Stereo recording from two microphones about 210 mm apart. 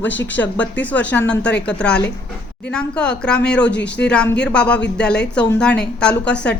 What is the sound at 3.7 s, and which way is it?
Speech, 55° left (ahead or behind).